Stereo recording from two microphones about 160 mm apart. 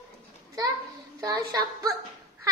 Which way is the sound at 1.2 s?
20° right (ahead or behind).